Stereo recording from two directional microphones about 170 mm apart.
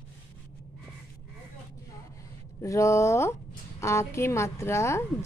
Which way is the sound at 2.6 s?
15° left (ahead or behind).